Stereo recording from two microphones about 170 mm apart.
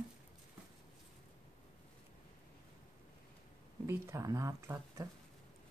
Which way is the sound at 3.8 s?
15° right (ahead or behind).